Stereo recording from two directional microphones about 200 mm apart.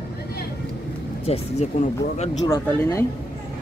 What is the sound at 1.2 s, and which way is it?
Speech, 30° left (ahead or behind).